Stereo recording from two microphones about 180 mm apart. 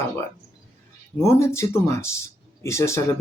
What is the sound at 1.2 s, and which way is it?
Speech, 15° left (ahead or behind).